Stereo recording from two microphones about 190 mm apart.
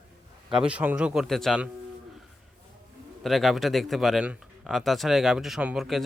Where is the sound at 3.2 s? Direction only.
Centre (ahead or behind).